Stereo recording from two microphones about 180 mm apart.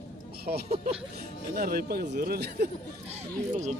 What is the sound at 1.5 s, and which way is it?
Speech, 55° right (ahead or behind).